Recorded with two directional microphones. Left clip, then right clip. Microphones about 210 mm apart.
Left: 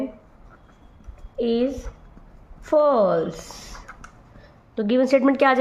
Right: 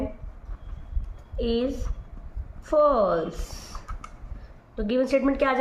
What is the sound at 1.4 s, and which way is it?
A woman's voice, 30° left (ahead or behind).